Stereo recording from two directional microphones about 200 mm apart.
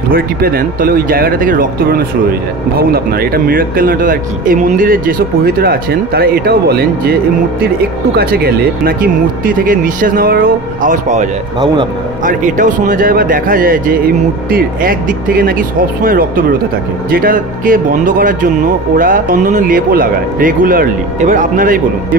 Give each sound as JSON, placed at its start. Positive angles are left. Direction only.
{"t": 0.1, "sound": "speech", "side_deg": -45}
{"t": 8.2, "sound": "speech", "side_deg": -50}
{"t": 11.6, "sound": "a man's voice", "side_deg": -25}
{"t": 12.3, "sound": "speech", "side_deg": -40}